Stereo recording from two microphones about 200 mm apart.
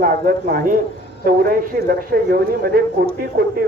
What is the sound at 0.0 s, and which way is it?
A man's voice, 45° right (ahead or behind).